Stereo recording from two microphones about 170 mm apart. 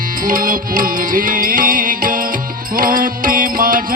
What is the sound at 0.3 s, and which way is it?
Music, 55° right (ahead or behind).